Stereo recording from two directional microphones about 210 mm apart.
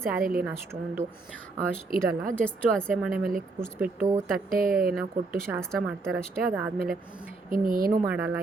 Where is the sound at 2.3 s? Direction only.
5° left (ahead or behind).